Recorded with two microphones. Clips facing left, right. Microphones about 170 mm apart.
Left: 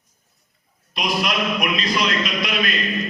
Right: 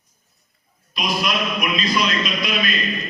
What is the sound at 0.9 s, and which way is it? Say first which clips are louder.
A man's voice: even; 70° left (ahead or behind).